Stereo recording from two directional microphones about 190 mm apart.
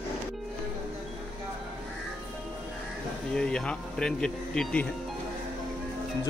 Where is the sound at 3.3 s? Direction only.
5° left (ahead or behind).